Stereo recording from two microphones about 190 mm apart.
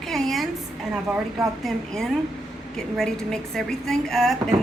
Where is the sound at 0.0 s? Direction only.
Centre (ahead or behind).